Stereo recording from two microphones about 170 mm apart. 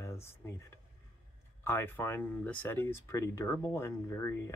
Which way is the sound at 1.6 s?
10° left (ahead or behind).